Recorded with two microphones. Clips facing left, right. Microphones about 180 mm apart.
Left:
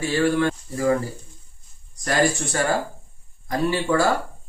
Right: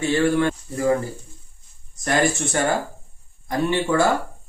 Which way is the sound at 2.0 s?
25° right (ahead or behind).